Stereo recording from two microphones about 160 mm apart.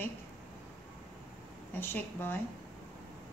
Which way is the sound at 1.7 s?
15° left (ahead or behind).